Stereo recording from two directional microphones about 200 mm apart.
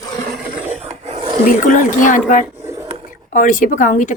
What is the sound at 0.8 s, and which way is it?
Wild animals, 30° right (ahead or behind).